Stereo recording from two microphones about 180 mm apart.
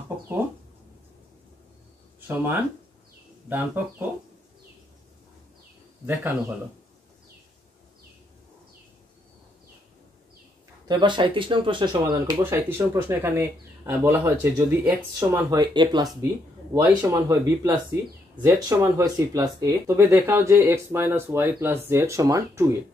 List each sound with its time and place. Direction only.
2.1 s speech: 10° right (ahead or behind)
10.9 s speech: 25° right (ahead or behind)